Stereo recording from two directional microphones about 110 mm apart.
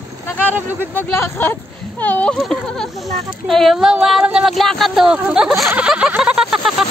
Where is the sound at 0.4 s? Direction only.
15° right (ahead or behind).